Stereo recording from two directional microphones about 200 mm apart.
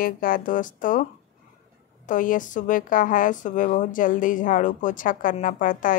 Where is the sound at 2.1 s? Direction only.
40° left (ahead or behind).